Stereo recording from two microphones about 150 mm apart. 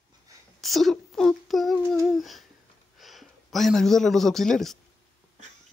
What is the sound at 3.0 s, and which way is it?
A man's voice, centre (ahead or behind).